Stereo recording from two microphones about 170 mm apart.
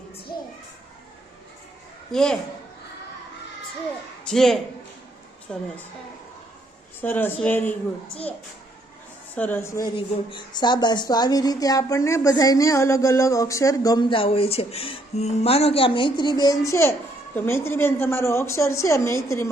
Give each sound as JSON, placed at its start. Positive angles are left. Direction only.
{"t": 2.1, "sound": "a woman's voice", "side_deg": 5}
{"t": 4.2, "sound": "a man's voice", "side_deg": 0}
{"t": 7.0, "sound": "a woman's voice", "side_deg": 10}
{"t": 9.3, "sound": "a woman's voice", "side_deg": 10}
{"t": 9.8, "sound": "a woman's voice", "side_deg": 30}